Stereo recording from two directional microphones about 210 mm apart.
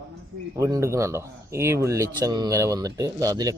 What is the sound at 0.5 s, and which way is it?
Speech, 15° right (ahead or behind).